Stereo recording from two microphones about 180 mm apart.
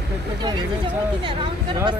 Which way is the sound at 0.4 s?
25° right (ahead or behind).